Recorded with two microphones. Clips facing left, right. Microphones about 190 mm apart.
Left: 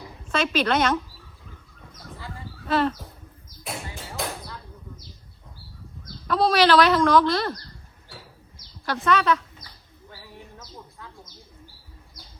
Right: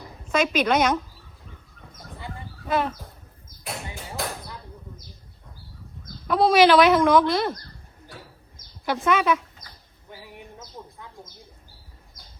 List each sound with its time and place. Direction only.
0.3 s a woman's voice: 10° right (ahead or behind)
2.1 s a sound: 20° right (ahead or behind)
4.2 s basketball bounce: centre (ahead or behind)
6.3 s speech: 20° right (ahead or behind)
8.9 s speech: 20° right (ahead or behind)
10.1 s a sound: 15° right (ahead or behind)